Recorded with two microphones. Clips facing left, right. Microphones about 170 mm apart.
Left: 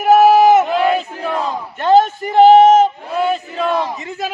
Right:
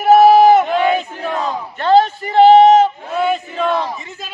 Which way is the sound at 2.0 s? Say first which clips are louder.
Even; 45° left (ahead or behind).